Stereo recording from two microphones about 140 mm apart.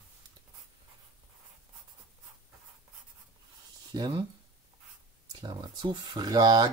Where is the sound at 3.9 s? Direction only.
30° right (ahead or behind).